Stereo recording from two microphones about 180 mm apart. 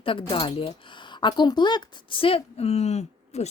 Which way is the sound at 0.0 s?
30° left (ahead or behind).